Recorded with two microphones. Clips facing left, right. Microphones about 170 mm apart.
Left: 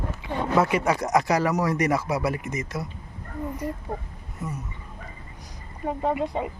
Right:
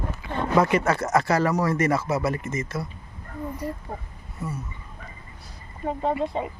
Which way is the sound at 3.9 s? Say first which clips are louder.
Left 3 dB; centre (ahead or behind).